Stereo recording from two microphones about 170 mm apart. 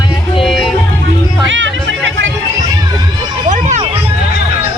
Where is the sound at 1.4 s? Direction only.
90° right.